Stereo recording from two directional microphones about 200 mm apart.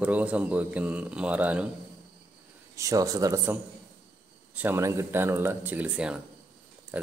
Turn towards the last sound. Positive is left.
turn(degrees=-5)  # may be behind; listen again after turning